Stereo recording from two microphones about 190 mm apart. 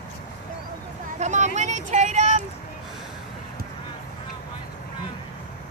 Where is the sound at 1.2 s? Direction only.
40° right (ahead or behind).